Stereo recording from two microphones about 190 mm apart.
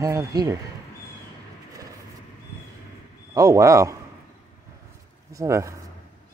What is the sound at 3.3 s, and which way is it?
Speech, 15° right (ahead or behind).